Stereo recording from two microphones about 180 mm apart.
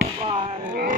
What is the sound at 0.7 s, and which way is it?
Pig, 45° right (ahead or behind).